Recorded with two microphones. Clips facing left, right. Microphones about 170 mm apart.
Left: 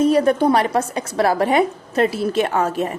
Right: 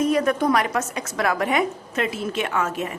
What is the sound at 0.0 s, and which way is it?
A woman's voice, 30° left (ahead or behind).